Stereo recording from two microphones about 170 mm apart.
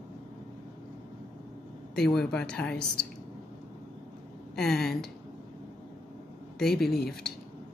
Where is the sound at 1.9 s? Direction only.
5° left (ahead or behind).